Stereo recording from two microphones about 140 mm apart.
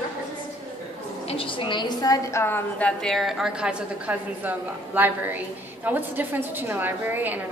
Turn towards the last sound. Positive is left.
turn(degrees=-15)  # may be behind; listen again after turning